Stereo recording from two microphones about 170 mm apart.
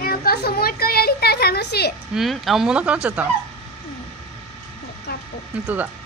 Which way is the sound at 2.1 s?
Centre (ahead or behind).